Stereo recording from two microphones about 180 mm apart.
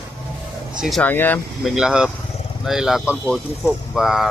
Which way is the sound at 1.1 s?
10° left (ahead or behind).